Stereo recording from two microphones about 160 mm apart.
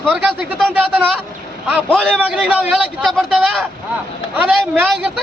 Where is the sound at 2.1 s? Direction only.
5° right (ahead or behind).